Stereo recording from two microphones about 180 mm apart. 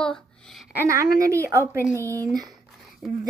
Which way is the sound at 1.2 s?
15° right (ahead or behind).